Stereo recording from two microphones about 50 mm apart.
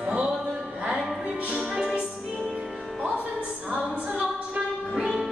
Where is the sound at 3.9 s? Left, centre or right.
Centre.